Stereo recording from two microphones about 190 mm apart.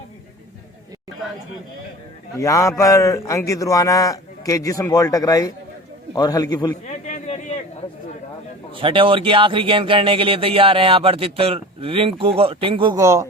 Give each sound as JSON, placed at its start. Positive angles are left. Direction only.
{"t": 2.4, "sound": "a man's voice", "side_deg": 15}
{"t": 6.8, "sound": "a sound", "side_deg": 40}
{"t": 8.7, "sound": "speech", "side_deg": -25}
{"t": 13.0, "sound": "speech", "side_deg": -15}